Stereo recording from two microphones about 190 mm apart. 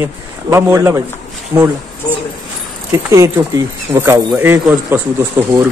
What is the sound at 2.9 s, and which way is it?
Speech, 15° right (ahead or behind).